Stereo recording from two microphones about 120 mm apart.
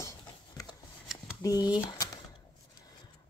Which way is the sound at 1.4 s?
30° left (ahead or behind).